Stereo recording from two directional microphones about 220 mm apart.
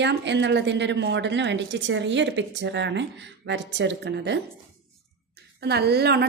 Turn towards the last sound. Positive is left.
turn(degrees=-50)  # may be behind; listen again after turning